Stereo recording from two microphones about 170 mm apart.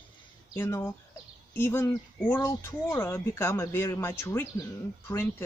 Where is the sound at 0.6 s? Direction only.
15° left (ahead or behind).